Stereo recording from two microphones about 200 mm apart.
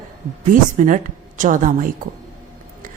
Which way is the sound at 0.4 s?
40° right (ahead or behind).